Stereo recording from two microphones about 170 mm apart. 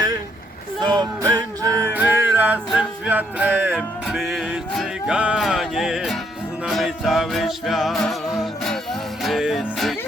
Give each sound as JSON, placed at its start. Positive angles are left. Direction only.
{"t": 0.8, "sound": "music", "side_deg": -25}
{"t": 2.0, "sound": "music", "side_deg": -10}
{"t": 3.8, "sound": "music", "side_deg": 0}